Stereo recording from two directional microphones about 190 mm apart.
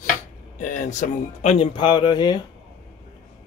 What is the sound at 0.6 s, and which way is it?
Speech, 40° left (ahead or behind).